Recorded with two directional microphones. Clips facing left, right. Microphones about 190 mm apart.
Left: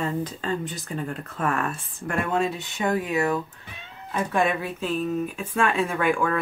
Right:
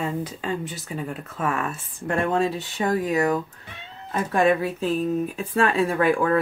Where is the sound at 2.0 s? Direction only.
35° right (ahead or behind).